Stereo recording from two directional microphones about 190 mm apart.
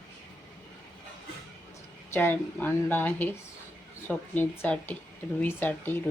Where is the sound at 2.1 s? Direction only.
10° left (ahead or behind).